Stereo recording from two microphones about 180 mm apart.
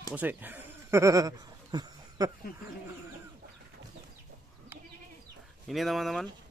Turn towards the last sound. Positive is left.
turn(degrees=0)  # may be behind; listen again after turning